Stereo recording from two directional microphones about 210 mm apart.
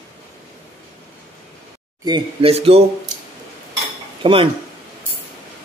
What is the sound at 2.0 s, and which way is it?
Speech, 25° right (ahead or behind).